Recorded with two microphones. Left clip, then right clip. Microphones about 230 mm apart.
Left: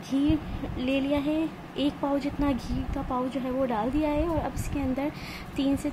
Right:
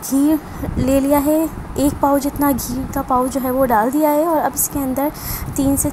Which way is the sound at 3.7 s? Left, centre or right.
Centre.